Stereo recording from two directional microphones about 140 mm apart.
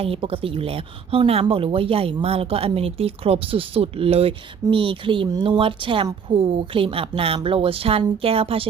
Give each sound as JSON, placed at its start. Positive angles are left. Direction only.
{"t": 0.0, "sound": "a woman's voice", "side_deg": -45}